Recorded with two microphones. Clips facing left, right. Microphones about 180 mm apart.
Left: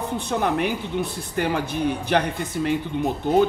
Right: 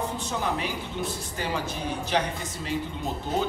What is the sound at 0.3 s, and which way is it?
Speech, 60° left (ahead or behind).